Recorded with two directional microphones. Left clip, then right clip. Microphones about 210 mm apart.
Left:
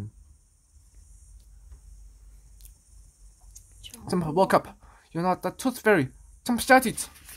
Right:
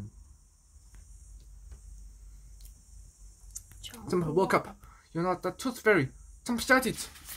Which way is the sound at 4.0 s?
40° left (ahead or behind).